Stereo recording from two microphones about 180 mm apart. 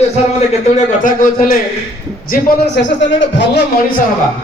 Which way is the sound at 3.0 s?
90° left.